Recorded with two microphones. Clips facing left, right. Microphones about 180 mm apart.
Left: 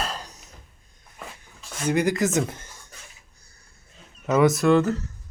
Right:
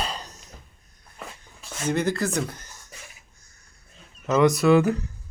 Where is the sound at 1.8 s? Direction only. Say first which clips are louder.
Left 2 dB; 10° left (ahead or behind).